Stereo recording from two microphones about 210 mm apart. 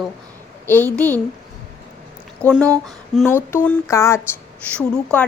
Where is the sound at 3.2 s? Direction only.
10° left (ahead or behind).